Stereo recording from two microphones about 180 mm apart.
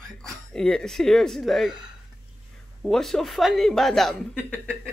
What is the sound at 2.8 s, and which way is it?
Speech, centre (ahead or behind).